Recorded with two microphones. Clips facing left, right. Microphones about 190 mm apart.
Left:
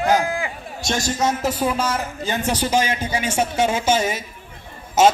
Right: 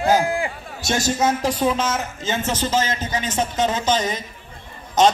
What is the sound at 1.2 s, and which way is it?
Speech, centre (ahead or behind).